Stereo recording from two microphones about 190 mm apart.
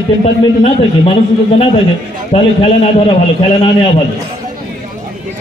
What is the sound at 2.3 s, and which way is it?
Speech, 30° left (ahead or behind).